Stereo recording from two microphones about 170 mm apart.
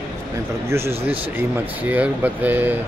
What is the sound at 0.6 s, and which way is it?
Speech, 15° right (ahead or behind).